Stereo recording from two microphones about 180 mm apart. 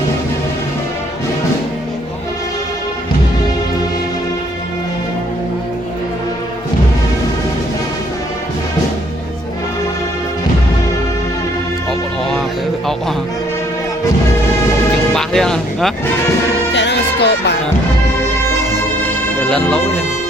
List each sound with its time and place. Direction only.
15.1 s music: 5° left (ahead or behind)
16.7 s music: 70° left (ahead or behind)
19.5 s speech: centre (ahead or behind)